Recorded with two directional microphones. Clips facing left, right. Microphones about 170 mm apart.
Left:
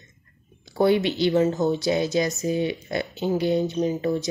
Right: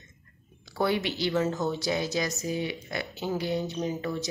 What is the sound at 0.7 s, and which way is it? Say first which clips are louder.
Speech: left 7 dB; 20° left (ahead or behind).